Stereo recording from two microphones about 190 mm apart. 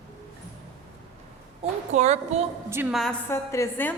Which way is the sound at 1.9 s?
35° right (ahead or behind).